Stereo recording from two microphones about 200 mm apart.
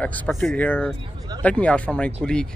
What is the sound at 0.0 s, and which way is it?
Speech, 5° left (ahead or behind).